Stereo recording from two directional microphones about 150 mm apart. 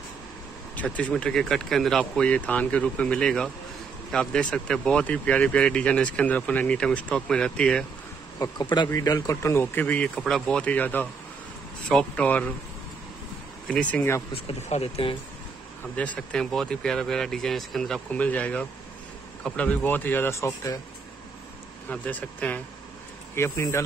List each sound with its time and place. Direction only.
0.7 s speech: 10° left (ahead or behind)
8.4 s speech: 30° left (ahead or behind); by 12.5 s 10° left (ahead or behind)
13.7 s speech: 10° left (ahead or behind)
14.3 s speech: 45° left (ahead or behind)
16.0 s speech: 5° left (ahead or behind)
21.8 s speech: 10° left (ahead or behind)